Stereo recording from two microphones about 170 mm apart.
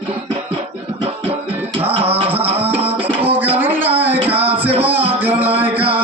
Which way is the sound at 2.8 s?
35° right (ahead or behind).